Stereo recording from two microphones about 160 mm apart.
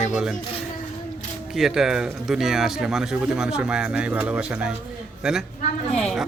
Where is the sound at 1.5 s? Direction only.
Centre (ahead or behind).